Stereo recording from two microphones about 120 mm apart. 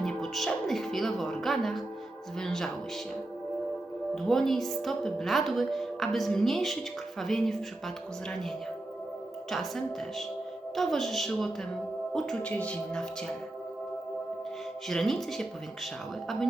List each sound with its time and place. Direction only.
0.0 s a woman's voice: 5° left (ahead or behind)
4.1 s a woman's voice: 5° left (ahead or behind)
14.8 s a woman's voice: 5° left (ahead or behind)